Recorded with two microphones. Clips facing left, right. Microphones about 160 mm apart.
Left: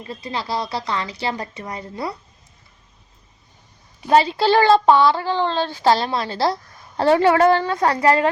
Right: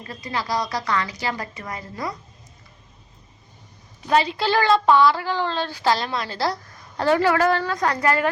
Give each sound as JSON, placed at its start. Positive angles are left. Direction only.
{"t": 0.0, "sound": "speech", "side_deg": 25}
{"t": 4.0, "sound": "speech", "side_deg": 30}